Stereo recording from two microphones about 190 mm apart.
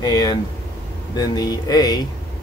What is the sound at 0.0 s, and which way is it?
Speech, 20° left (ahead or behind).